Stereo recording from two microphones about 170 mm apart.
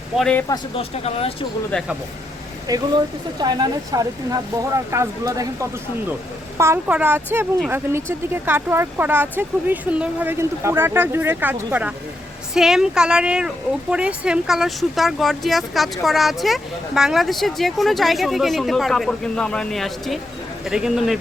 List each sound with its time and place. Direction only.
0.2 s speech: 5° left (ahead or behind)
0.8 s speech: 35° left (ahead or behind)
1.7 s speech: 10° left (ahead or behind)
2.6 s speech: 25° right (ahead or behind)
6.6 s speech: 15° right (ahead or behind)